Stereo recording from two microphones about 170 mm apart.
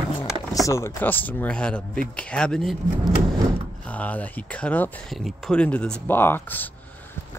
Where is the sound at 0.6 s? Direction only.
15° left (ahead or behind).